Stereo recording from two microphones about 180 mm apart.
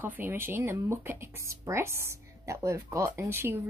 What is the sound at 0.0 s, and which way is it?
Speech, 10° right (ahead or behind).